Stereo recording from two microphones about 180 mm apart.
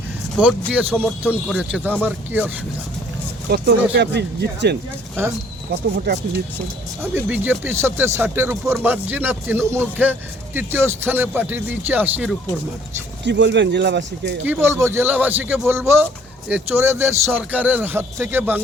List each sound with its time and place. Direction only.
0.3 s speech: 5° right (ahead or behind)
3.5 s speech: 65° right (ahead or behind)
6.1 s speech: 70° right (ahead or behind)
7.0 s speech: 10° right (ahead or behind)
13.2 s speech: 75° right (ahead or behind)
14.4 s speech: 15° right (ahead or behind)